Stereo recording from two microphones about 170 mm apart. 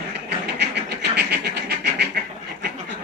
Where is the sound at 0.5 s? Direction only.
85° right.